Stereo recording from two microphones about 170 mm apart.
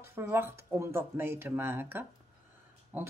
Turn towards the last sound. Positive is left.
turn(degrees=-10)  # may be behind; listen again after turning